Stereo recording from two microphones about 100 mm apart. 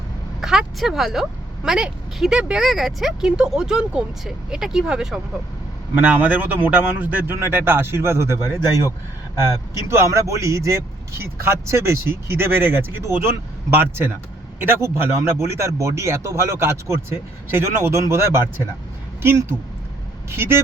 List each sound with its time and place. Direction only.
0.4 s a woman's voice: 5° right (ahead or behind)
5.9 s speech: 20° right (ahead or behind)